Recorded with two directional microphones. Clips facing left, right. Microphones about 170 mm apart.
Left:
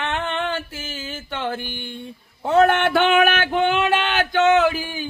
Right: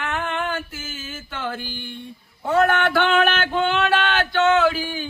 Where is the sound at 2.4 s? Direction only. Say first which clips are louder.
Left 2 dB; 25° left (ahead or behind).